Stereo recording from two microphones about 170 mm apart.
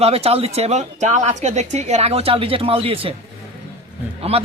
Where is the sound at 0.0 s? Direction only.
35° right (ahead or behind).